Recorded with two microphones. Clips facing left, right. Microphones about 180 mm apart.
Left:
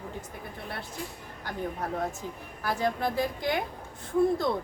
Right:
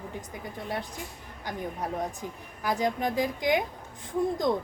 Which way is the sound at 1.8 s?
15° right (ahead or behind).